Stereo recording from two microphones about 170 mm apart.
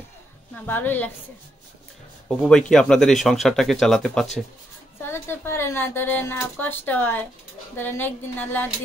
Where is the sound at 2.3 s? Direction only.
5° left (ahead or behind).